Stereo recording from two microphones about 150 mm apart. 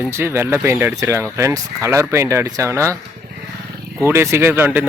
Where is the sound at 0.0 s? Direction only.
15° right (ahead or behind).